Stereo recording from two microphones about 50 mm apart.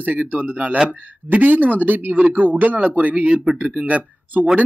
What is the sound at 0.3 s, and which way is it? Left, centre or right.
Speech, right.